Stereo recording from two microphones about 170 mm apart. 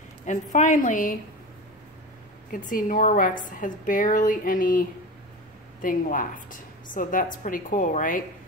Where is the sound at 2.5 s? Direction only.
55° left (ahead or behind).